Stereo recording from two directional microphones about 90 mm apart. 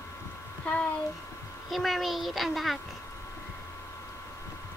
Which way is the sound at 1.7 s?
Centre (ahead or behind).